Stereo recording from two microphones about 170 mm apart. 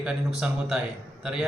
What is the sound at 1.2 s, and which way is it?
Speech, 5° right (ahead or behind).